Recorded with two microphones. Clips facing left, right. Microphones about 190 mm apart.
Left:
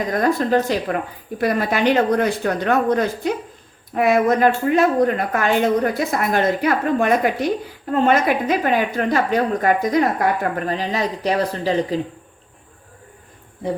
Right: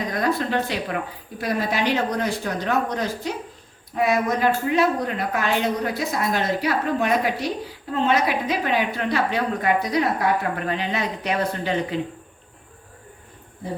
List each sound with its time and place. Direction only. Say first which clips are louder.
0.1 s speech: left 6 dB; 45° left (ahead or behind)
1.4 s speech: left 5 dB; 55° left (ahead or behind); by 11.9 s 35° left (ahead or behind)